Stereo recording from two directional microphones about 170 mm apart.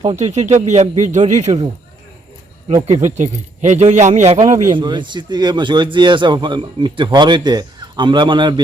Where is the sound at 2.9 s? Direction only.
45° right (ahead or behind).